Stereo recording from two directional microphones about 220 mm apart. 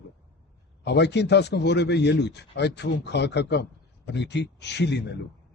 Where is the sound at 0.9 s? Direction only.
50° left (ahead or behind).